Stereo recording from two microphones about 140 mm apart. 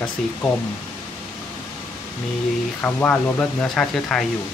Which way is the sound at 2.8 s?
10° left (ahead or behind).